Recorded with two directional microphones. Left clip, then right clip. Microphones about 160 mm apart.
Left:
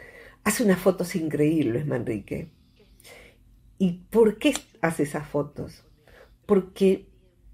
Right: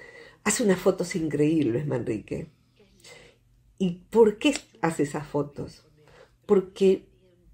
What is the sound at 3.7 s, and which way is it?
Speech, 20° right (ahead or behind).